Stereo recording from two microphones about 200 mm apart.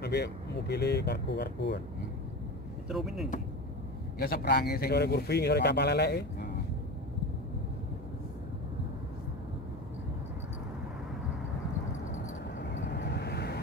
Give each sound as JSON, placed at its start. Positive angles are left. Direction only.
{"t": 0.0, "sound": "speech", "side_deg": 55}
{"t": 2.9, "sound": "speech", "side_deg": 0}
{"t": 4.2, "sound": "a man's voice", "side_deg": 50}
{"t": 12.5, "sound": "vehicle", "side_deg": 60}